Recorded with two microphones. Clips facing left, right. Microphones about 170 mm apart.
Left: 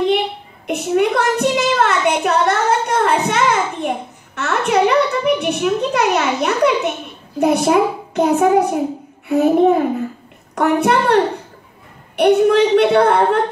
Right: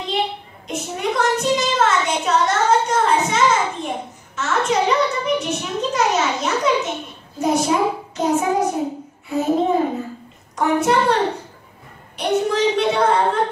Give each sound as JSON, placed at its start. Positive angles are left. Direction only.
{"t": 0.7, "sound": "a sound", "side_deg": 65}
{"t": 7.3, "sound": "a child's voice", "side_deg": 60}
{"t": 12.2, "sound": "a child's voice", "side_deg": 65}